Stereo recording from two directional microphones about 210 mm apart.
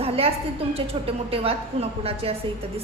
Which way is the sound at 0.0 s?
30° right (ahead or behind).